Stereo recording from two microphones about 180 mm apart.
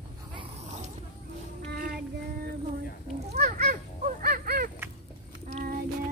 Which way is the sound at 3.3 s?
40° right (ahead or behind).